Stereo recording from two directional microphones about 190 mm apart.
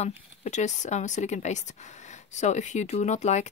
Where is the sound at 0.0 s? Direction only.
40° left (ahead or behind).